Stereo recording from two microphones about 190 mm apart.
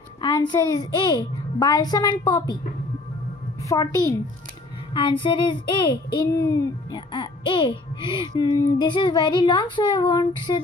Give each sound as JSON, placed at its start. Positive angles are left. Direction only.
{"t": 0.2, "sound": "a child's voice", "side_deg": 25}
{"t": 3.6, "sound": "a child's voice", "side_deg": 20}